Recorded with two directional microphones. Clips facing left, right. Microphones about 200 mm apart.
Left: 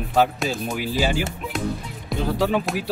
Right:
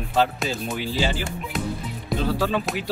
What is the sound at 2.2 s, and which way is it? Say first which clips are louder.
Speech: left 2 dB; 15° left (ahead or behind).